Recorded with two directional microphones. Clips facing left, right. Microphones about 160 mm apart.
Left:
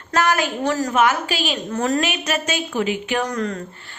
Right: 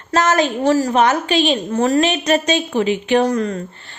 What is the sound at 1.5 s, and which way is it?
Speech, 25° right (ahead or behind).